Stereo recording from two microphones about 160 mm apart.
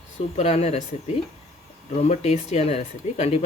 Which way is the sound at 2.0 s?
45° left (ahead or behind).